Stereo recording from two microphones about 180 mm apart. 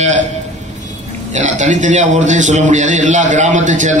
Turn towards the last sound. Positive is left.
turn(degrees=-45)  # may be behind; listen again after turning